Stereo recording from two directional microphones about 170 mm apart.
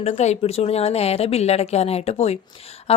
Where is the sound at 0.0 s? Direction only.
40° left (ahead or behind).